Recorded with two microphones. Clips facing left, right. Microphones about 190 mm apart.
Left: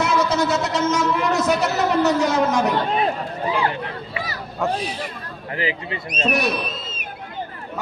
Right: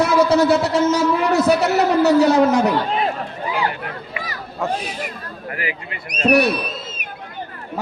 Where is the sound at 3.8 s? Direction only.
35° left (ahead or behind).